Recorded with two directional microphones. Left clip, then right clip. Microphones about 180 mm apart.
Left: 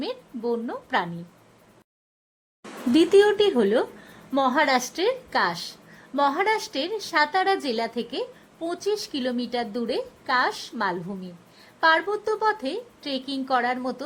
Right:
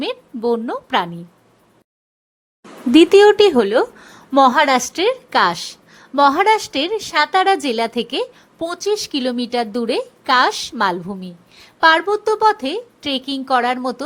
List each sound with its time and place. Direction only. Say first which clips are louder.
0.0 s a woman's voice: right 8 dB; 25° right (ahead or behind)
2.9 s a woman's voice: right 8 dB; 25° right (ahead or behind)